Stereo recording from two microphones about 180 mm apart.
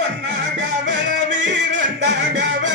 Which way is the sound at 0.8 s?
85° right.